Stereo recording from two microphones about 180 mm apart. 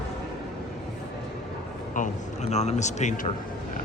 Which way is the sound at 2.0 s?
40° left (ahead or behind).